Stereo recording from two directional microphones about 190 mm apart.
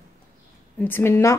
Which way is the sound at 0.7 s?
10° left (ahead or behind).